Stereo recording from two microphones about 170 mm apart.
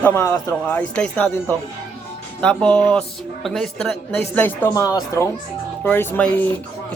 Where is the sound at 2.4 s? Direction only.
5° left (ahead or behind).